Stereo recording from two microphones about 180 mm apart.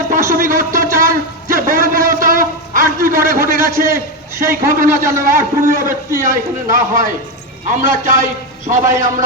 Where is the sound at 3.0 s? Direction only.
50° right (ahead or behind).